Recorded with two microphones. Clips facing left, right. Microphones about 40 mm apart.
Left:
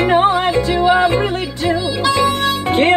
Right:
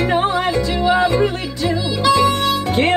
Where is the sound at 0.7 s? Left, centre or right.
Centre.